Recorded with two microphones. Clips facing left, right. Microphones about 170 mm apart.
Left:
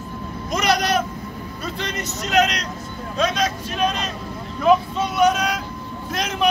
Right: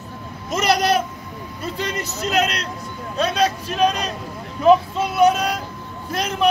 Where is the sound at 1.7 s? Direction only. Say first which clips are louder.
Right 3 dB; 35° right (ahead or behind).